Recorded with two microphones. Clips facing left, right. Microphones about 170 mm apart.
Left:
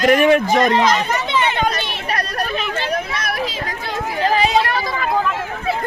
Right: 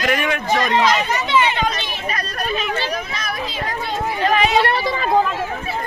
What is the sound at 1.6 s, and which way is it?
Hubbub, 65° left (ahead or behind).